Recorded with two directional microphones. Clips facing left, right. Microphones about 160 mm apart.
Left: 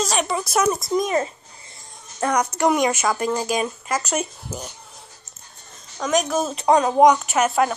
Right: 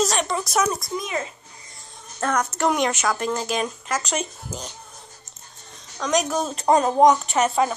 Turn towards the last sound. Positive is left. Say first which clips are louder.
# left 1 dB
turn(degrees=5)  # may be behind; listen again after turning